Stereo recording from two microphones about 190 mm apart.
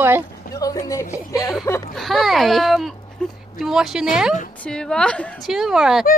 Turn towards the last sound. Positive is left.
turn(degrees=0)  # may be behind; listen again after turning